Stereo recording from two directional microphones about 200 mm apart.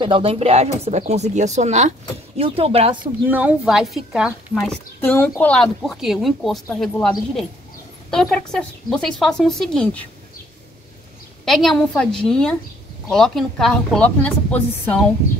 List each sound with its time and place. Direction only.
0.0 s speech: 25° right (ahead or behind)
3.3 s a woman's voice: 5° right (ahead or behind)
11.4 s a woman's voice: centre (ahead or behind)